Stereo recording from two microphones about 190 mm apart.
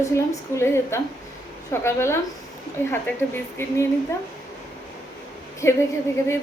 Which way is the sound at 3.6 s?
15° left (ahead or behind).